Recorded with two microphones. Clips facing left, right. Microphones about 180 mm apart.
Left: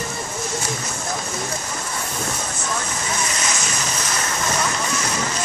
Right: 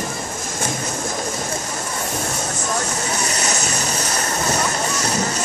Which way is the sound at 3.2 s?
40° right (ahead or behind).